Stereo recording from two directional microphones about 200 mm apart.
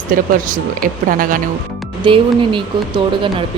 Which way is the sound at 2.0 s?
25° right (ahead or behind).